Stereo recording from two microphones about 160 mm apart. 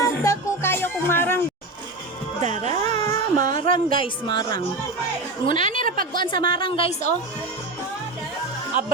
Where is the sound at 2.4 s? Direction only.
45° right (ahead or behind).